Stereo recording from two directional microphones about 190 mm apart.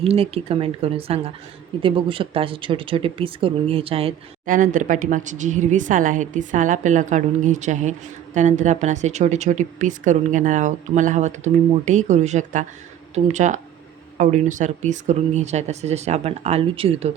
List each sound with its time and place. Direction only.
0.0 s a woman's voice: 30° right (ahead or behind)
4.4 s a woman's voice: 45° right (ahead or behind)